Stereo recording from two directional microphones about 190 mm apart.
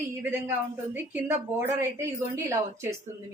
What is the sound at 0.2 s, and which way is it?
A woman's voice, 10° right (ahead or behind).